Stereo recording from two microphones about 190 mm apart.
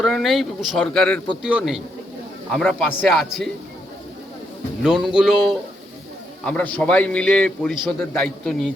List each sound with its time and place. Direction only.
0.0 s speech: centre (ahead or behind)
4.8 s a man's voice: centre (ahead or behind)